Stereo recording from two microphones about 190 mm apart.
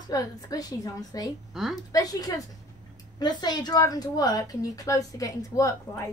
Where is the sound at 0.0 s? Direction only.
20° left (ahead or behind).